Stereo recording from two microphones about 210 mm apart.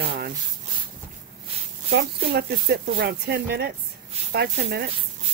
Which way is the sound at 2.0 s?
50° right (ahead or behind).